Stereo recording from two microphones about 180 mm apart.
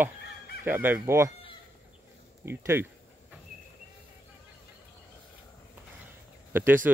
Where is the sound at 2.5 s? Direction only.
15° right (ahead or behind).